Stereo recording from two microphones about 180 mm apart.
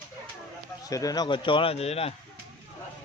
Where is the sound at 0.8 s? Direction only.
20° left (ahead or behind); by 2.1 s 35° left (ahead or behind).